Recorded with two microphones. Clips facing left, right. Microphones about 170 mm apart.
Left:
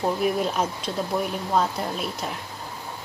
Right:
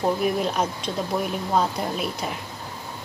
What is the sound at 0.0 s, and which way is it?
A woman's voice, centre (ahead or behind).